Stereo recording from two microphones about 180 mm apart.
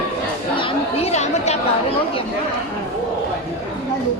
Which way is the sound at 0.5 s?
30° left (ahead or behind).